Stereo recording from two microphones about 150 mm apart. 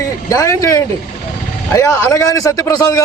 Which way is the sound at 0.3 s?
20° left (ahead or behind).